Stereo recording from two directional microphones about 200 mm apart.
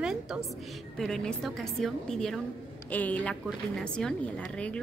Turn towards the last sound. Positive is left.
turn(degrees=5)  # may be behind; listen again after turning